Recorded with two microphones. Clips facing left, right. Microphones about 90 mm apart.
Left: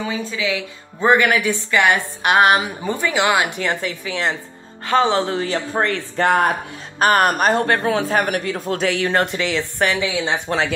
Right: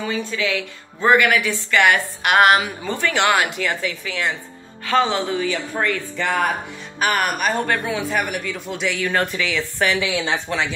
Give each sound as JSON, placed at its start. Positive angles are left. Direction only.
{"t": 0.1, "sound": "a woman's voice", "side_deg": 15}
{"t": 1.0, "sound": "a woman's voice", "side_deg": 25}
{"t": 3.5, "sound": "a woman's voice", "side_deg": 30}
{"t": 5.3, "sound": "speech", "side_deg": 40}
{"t": 6.1, "sound": "speech", "side_deg": 45}